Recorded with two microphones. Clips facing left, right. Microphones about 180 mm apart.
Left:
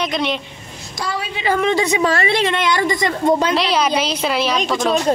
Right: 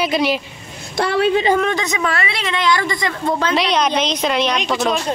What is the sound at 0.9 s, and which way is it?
Speech, 60° right (ahead or behind).